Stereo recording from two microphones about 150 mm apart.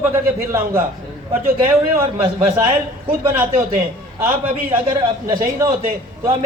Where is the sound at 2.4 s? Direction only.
35° right (ahead or behind).